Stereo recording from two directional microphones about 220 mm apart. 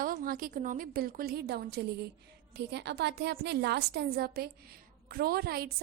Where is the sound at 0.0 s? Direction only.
40° right (ahead or behind).